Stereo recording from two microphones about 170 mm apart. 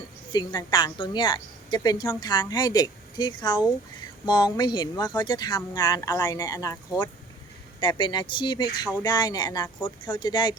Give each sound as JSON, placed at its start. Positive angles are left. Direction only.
{"t": 0.3, "sound": "speech", "side_deg": 25}
{"t": 7.8, "sound": "speech", "side_deg": 30}